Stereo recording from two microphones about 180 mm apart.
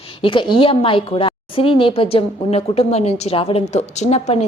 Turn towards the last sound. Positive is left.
turn(degrees=40)  # may be behind; listen again after turning